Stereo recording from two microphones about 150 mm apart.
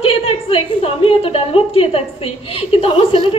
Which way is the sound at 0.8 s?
40° left (ahead or behind).